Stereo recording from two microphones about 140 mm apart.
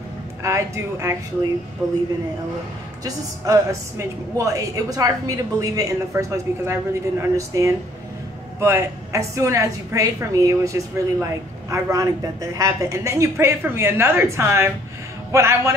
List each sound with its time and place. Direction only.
0.4 s a woman's voice: 20° right (ahead or behind)
3.0 s a woman's voice: 25° right (ahead or behind)